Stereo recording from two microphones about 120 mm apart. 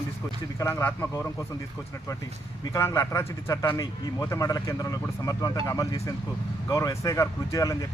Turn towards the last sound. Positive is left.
turn(degrees=30)  # may be behind; listen again after turning